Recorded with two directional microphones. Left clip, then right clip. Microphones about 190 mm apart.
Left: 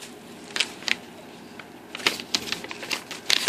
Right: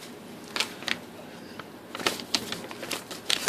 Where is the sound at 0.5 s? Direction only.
35° right (ahead or behind).